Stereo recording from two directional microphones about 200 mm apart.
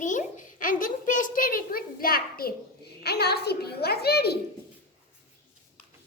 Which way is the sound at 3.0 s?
55° left (ahead or behind).